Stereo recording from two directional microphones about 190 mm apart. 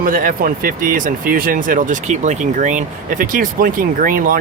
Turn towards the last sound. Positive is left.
turn(degrees=-50)  # may be behind; listen again after turning